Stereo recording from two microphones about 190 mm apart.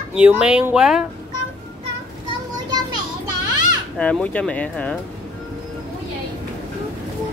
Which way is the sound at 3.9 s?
5° left (ahead or behind).